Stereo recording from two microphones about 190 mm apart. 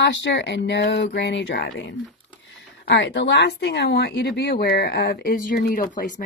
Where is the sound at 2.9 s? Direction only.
65° left (ahead or behind).